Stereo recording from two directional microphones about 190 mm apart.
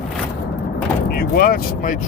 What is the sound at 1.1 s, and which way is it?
Speech, 50° left (ahead or behind).